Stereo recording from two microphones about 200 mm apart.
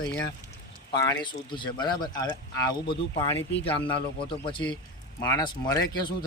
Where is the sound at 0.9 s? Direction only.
25° left (ahead or behind).